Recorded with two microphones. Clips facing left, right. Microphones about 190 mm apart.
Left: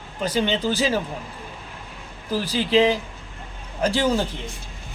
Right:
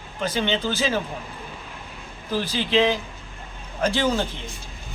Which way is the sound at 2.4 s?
35° left (ahead or behind).